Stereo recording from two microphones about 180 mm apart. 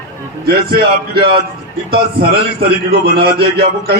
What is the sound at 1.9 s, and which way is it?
A man's voice, 60° right (ahead or behind).